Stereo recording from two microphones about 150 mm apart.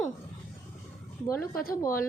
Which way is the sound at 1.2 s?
20° left (ahead or behind).